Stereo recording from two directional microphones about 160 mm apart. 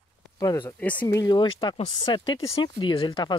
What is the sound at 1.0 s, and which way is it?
Speech, 20° left (ahead or behind).